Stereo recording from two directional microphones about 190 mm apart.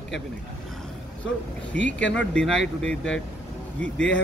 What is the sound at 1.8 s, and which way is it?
Speech, 70° left (ahead or behind).